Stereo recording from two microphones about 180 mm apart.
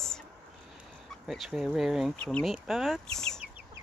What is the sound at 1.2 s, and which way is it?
Speech, centre (ahead or behind).